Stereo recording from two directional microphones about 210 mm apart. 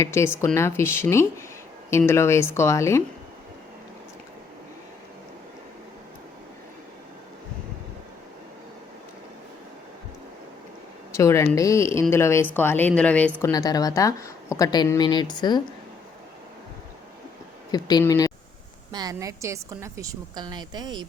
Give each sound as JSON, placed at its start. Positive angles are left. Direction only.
{"t": 0.0, "sound": "a woman's voice", "side_deg": 15}
{"t": 11.1, "sound": "a woman's voice", "side_deg": 15}
{"t": 13.4, "sound": "a woman's voice", "side_deg": 15}
{"t": 17.7, "sound": "speech", "side_deg": 20}
{"t": 18.9, "sound": "a woman's voice", "side_deg": -20}